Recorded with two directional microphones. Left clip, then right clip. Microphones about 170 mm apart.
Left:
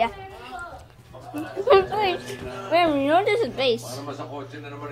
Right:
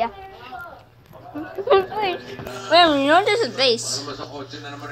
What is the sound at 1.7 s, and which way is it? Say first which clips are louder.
Speech: even; 5° left (ahead or behind).